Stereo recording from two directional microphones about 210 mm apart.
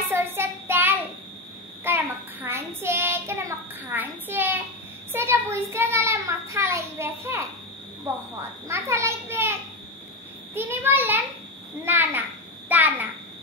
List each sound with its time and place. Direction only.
0.1 s child singing: 10° right (ahead or behind)
5.1 s a child's voice: 10° right (ahead or behind)
8.6 s a child's voice: 10° right (ahead or behind)
12.6 s a sound: 10° right (ahead or behind)